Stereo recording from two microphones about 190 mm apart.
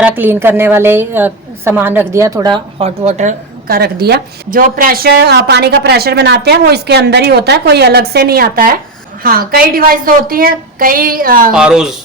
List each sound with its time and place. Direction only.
0.2 s a woman's voice: 10° right (ahead or behind); by 11.5 s 50° right (ahead or behind)
11.5 s speech: 5° right (ahead or behind)